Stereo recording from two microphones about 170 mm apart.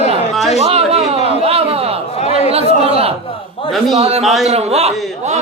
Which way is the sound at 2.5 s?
35° right (ahead or behind).